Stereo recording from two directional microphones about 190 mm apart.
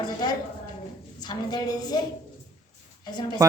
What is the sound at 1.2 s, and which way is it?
Speech, 20° left (ahead or behind).